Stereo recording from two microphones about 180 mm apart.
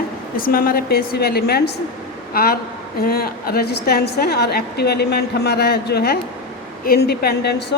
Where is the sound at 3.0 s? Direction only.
60° left (ahead or behind).